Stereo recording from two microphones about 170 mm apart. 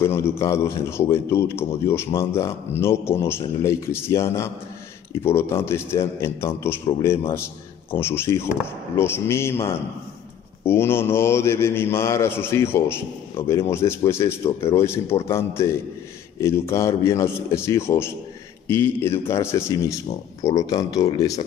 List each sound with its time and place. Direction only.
0.0 s speech: 15° left (ahead or behind)
10.7 s speech: 15° left (ahead or behind)